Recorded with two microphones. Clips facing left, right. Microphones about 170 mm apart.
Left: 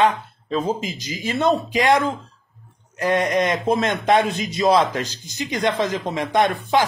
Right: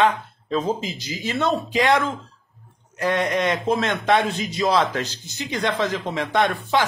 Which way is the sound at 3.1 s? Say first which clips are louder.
Left 2 dB; 40° left (ahead or behind).